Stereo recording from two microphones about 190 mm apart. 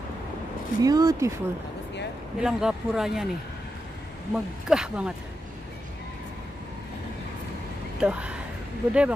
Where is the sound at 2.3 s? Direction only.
5° right (ahead or behind).